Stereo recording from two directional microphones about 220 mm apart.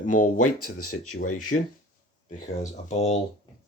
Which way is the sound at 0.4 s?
90° left.